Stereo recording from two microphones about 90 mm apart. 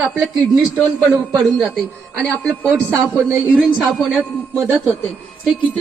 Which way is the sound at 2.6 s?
25° right (ahead or behind).